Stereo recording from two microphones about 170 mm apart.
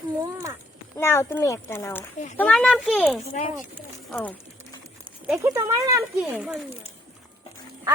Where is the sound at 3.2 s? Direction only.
50° left (ahead or behind).